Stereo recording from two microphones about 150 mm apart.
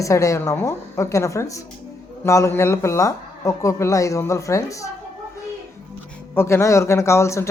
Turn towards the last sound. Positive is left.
turn(degrees=20)  # may be behind; listen again after turning